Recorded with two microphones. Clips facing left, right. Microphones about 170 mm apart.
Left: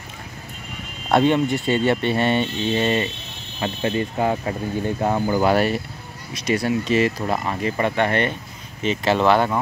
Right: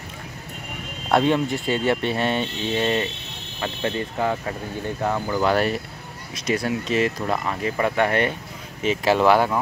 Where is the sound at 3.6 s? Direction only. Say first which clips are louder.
Left 3 dB; 20° left (ahead or behind).